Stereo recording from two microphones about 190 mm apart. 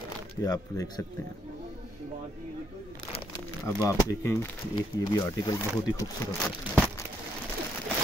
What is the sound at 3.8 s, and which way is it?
Speech, 15° left (ahead or behind).